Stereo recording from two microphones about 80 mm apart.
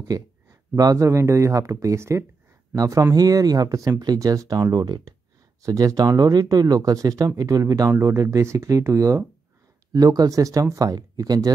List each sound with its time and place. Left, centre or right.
0.1 s speech: right
8.0 s speech: right
9.9 s speech: right